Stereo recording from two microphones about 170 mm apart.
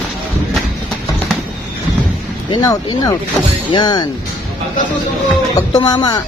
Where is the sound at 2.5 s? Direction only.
25° left (ahead or behind).